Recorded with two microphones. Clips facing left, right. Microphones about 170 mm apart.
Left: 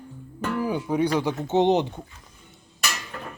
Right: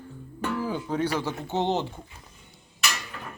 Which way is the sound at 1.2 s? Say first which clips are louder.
Left 6 dB; 15° left (ahead or behind).